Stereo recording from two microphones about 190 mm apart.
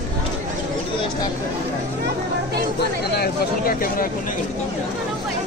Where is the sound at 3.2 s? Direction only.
50° left (ahead or behind).